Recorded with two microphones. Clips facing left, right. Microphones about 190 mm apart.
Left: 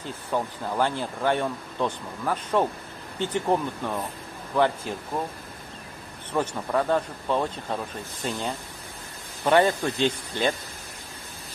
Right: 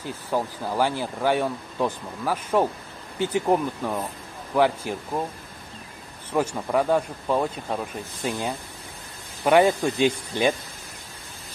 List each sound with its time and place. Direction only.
0.3 s speech: 5° right (ahead or behind)
6.3 s speech: 10° right (ahead or behind)